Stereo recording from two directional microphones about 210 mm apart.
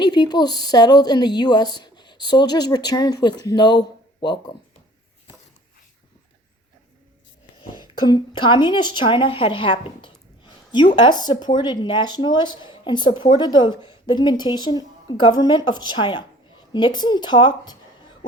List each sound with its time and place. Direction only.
0.0 s speech: 20° left (ahead or behind)
7.6 s speech: 20° left (ahead or behind)